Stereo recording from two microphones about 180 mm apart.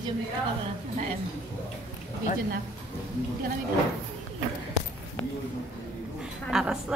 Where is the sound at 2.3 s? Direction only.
40° left (ahead or behind).